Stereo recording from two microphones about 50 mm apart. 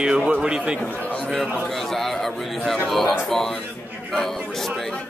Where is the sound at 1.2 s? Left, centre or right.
Centre.